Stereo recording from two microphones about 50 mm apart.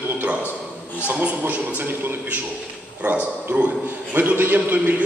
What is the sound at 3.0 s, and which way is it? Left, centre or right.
Speech, right.